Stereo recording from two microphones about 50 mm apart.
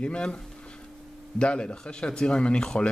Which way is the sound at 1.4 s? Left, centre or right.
Centre.